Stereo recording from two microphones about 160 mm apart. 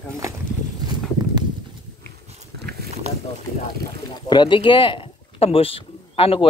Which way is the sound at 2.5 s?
80° right.